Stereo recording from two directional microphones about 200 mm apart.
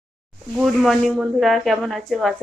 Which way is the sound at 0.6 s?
Centre (ahead or behind).